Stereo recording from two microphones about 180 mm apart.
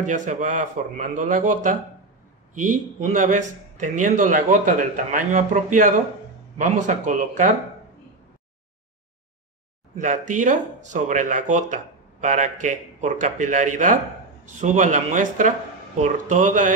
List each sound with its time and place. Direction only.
0.0 s speech: 45° right (ahead or behind)
9.9 s speech: 45° right (ahead or behind)